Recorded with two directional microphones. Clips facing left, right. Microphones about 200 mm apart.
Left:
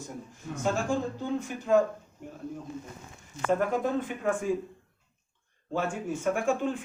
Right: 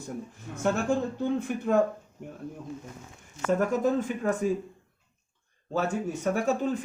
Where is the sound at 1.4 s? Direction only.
55° right (ahead or behind).